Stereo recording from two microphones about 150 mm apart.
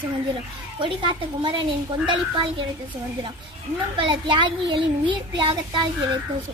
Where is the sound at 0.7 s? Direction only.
35° right (ahead or behind).